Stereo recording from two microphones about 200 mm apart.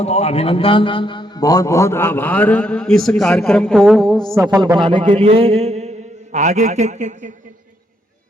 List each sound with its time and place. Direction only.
0.0 s a man's voice: 30° left (ahead or behind); by 4.2 s centre (ahead or behind)
4.4 s a man's voice: 20° right (ahead or behind); by 7.3 s 40° right (ahead or behind)